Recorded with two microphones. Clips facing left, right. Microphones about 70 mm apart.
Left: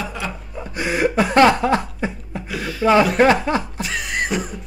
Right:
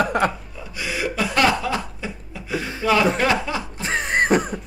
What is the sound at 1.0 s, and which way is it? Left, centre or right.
Chuckle, left.